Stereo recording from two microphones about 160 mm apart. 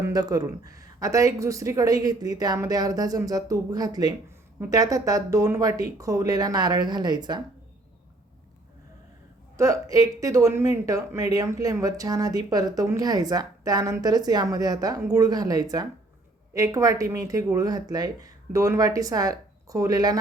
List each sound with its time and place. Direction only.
0.0 s speech: 25° right (ahead or behind)
9.6 s speech: 20° right (ahead or behind)